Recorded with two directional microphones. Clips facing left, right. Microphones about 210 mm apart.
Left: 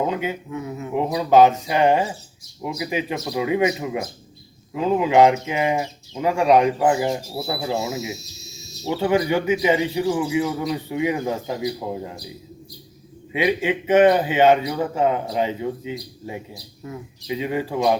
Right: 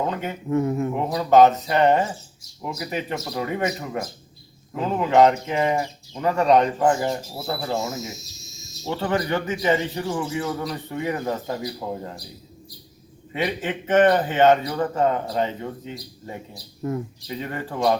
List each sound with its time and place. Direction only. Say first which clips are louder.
0.0 s speech: left 3 dB; 10° left (ahead or behind)
0.5 s speech: right 8 dB; 50° right (ahead or behind)
0.9 s speech: left 2 dB; 10° left (ahead or behind)
13.3 s speech: left 5 dB; 10° left (ahead or behind)
16.8 s speech: right 8 dB; 50° right (ahead or behind)
17.2 s speech: left 6 dB; 10° left (ahead or behind)